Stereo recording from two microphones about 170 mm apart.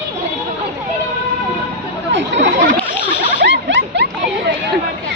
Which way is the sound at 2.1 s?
90° right.